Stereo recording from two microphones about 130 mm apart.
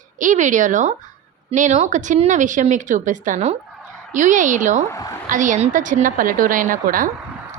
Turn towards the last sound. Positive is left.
turn(degrees=-90)